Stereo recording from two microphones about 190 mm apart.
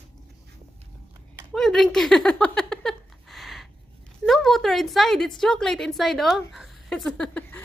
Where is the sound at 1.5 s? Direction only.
Centre (ahead or behind).